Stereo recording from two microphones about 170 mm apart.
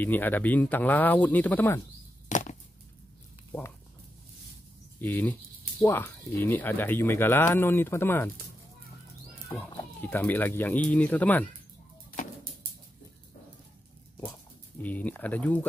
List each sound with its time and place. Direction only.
0.0 s speech: 10° left (ahead or behind)
2.2 s chop: 45° left (ahead or behind)
4.9 s speech: 10° left (ahead or behind)
10.0 s speech: 10° left (ahead or behind)
14.8 s speech: 10° left (ahead or behind)